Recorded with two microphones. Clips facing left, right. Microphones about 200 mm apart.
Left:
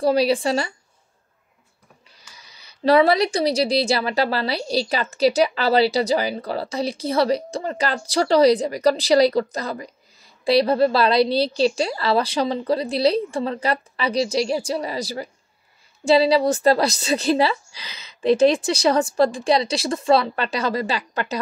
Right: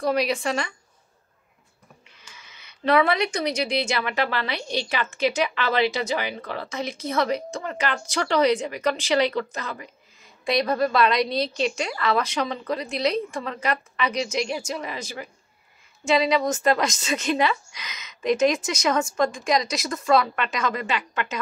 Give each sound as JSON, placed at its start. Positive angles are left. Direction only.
{"t": 0.0, "sound": "speech", "side_deg": 30}
{"t": 2.2, "sound": "speech", "side_deg": 35}